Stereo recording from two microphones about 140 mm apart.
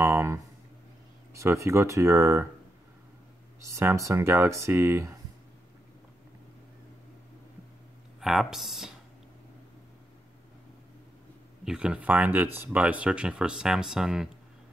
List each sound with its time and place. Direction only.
0.0 s a sound: 20° right (ahead or behind)
1.3 s speech: 20° right (ahead or behind)
3.6 s speech: 20° right (ahead or behind)
8.2 s speech: centre (ahead or behind)
11.6 s speech: 5° right (ahead or behind)